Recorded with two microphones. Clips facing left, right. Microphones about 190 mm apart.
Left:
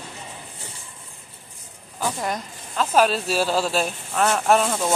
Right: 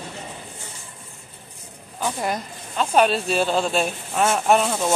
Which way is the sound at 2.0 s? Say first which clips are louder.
Right 1 dB; 5° right (ahead or behind).